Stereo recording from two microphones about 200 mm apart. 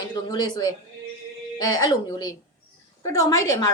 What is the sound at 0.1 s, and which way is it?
A woman's voice, 20° left (ahead or behind).